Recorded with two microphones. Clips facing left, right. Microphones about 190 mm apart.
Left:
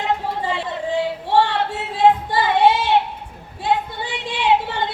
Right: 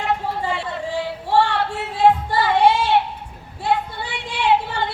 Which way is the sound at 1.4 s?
20° left (ahead or behind).